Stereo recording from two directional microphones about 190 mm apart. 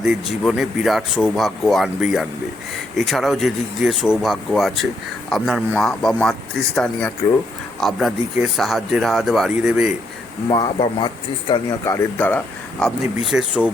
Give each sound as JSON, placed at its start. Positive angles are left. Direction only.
{"t": 0.0, "sound": "speech", "side_deg": -5}
{"t": 10.5, "sound": "speech", "side_deg": 25}
{"t": 11.9, "sound": "speech", "side_deg": 10}